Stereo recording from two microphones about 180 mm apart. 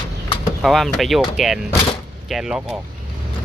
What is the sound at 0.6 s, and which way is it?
Speech, centre (ahead or behind).